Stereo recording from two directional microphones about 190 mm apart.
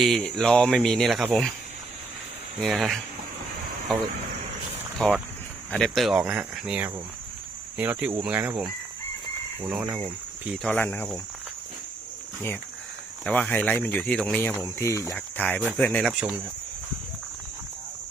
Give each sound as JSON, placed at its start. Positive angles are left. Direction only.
{"t": 0.0, "sound": "speech", "side_deg": 0}
{"t": 2.6, "sound": "speech", "side_deg": 0}
{"t": 4.9, "sound": "speech", "side_deg": 0}
{"t": 10.5, "sound": "speech", "side_deg": 5}
{"t": 13.2, "sound": "speech", "side_deg": 5}